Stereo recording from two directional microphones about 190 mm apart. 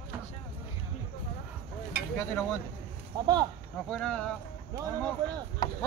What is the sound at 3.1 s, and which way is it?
Speech, 20° right (ahead or behind).